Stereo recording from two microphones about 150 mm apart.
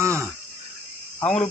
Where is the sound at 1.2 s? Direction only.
5° left (ahead or behind).